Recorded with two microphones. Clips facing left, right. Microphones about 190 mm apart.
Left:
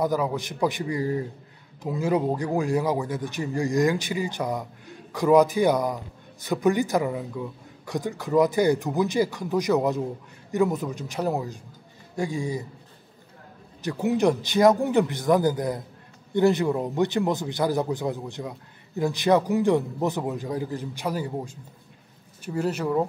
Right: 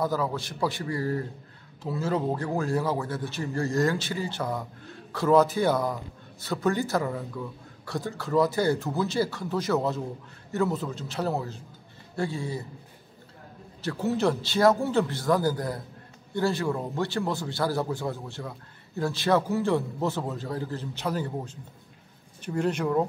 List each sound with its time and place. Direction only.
0.0 s speech: 15° left (ahead or behind)
13.8 s speech: 15° left (ahead or behind)